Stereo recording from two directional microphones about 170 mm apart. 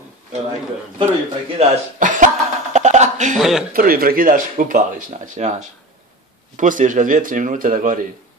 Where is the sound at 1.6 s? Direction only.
50° right (ahead or behind).